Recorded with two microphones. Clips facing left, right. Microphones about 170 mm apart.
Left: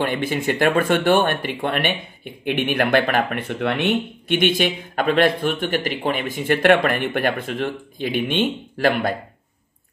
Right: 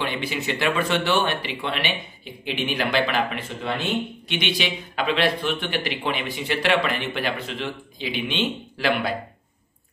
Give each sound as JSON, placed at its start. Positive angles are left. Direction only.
{"t": 0.0, "sound": "speech", "side_deg": 50}